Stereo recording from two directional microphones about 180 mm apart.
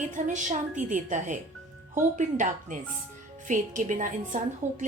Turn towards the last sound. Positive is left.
turn(degrees=-45)  # may be behind; listen again after turning